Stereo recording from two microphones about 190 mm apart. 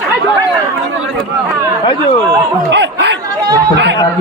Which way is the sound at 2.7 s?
65° right (ahead or behind).